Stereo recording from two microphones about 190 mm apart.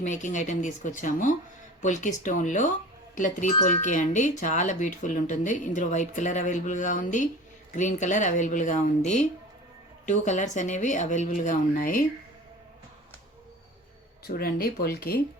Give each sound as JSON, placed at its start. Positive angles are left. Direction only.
{"t": 0.0, "sound": "speech", "side_deg": 40}
{"t": 14.3, "sound": "speech", "side_deg": 50}